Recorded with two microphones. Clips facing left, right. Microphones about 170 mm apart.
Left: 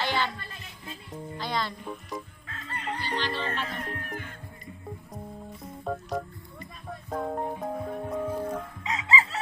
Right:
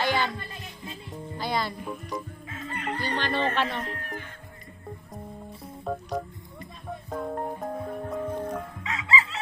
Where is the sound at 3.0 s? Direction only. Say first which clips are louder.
Right 5 dB; 55° right (ahead or behind); by 3.8 s 85° right.